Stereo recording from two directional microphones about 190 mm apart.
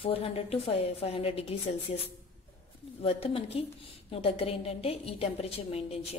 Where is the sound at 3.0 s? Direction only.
30° left (ahead or behind).